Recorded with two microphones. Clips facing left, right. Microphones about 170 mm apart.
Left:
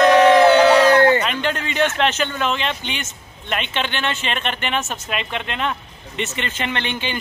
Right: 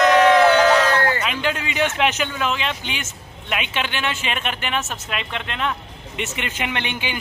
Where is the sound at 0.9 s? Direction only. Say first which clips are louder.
Left 7 dB; 20° left (ahead or behind).